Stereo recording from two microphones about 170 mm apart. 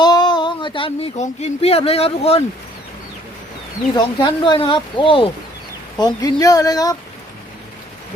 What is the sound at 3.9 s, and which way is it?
Speech, 30° left (ahead or behind).